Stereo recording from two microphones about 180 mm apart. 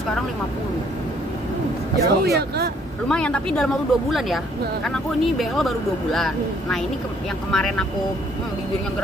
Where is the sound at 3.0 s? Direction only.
5° left (ahead or behind).